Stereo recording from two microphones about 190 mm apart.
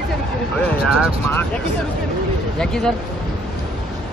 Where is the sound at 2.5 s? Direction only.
5° left (ahead or behind).